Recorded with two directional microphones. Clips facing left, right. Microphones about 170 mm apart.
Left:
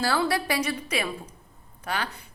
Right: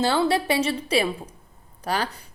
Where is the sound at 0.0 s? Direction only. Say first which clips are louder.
Right 4 dB; 25° right (ahead or behind).